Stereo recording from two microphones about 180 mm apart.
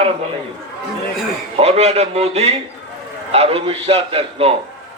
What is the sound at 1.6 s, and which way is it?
A man's voice, 35° right (ahead or behind).